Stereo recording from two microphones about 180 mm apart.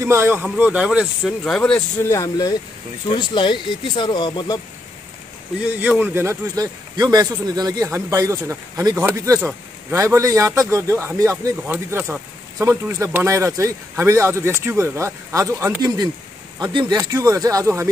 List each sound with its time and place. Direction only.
0.0 s a man's voice: 15° right (ahead or behind)
1.4 s speech: 5° left (ahead or behind)
2.0 s speech: 20° left (ahead or behind)
5.8 s a man's voice: 10° right (ahead or behind)